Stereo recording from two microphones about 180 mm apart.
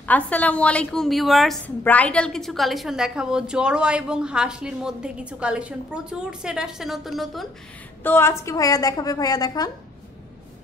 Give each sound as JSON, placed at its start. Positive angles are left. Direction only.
{"t": 0.0, "sound": "a woman's voice", "side_deg": 10}
{"t": 8.0, "sound": "a woman's voice", "side_deg": 10}